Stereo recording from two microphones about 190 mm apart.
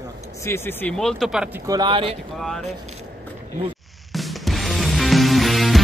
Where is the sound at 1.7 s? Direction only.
25° right (ahead or behind).